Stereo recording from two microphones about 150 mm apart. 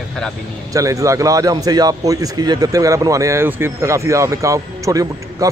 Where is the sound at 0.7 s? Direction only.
20° right (ahead or behind).